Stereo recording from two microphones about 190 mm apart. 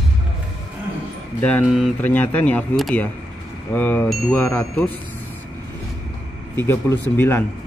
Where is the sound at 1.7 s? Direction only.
Centre (ahead or behind).